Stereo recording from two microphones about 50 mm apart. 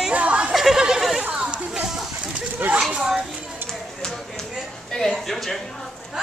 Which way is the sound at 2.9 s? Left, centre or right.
Centre.